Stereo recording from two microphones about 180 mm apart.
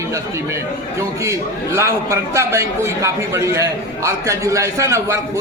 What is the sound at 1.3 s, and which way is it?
A man's voice, 15° right (ahead or behind).